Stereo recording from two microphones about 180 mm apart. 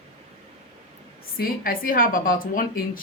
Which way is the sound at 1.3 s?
50° left (ahead or behind).